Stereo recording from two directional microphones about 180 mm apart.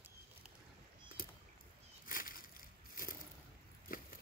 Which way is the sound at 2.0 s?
50° left (ahead or behind).